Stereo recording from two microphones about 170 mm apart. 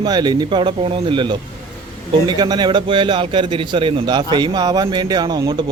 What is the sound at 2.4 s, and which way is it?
A man's voice, 25° right (ahead or behind).